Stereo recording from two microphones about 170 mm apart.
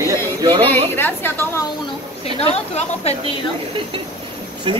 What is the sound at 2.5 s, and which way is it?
Speech, 35° left (ahead or behind).